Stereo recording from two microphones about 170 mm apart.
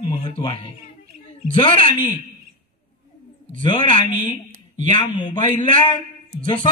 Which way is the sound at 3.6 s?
30° left (ahead or behind).